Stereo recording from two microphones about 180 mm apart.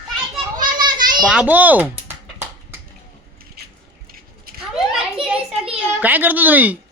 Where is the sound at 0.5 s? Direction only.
25° right (ahead or behind).